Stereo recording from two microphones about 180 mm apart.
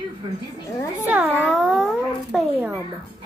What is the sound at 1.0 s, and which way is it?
Speech, 10° right (ahead or behind).